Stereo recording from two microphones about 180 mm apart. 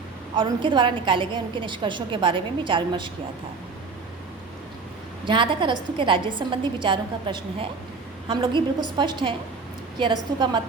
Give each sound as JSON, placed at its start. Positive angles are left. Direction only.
{"t": 0.3, "sound": "a woman's voice", "side_deg": -25}
{"t": 5.2, "sound": "a woman's voice", "side_deg": -30}